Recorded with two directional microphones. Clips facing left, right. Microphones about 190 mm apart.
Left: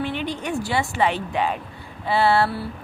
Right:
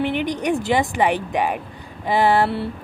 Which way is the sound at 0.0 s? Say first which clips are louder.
Right 5 dB; 15° right (ahead or behind).